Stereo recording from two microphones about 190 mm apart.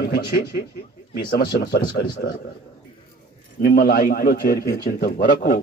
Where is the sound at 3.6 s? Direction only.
55° left (ahead or behind).